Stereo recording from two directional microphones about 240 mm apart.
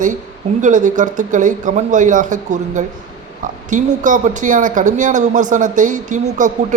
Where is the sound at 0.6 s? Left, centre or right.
Right.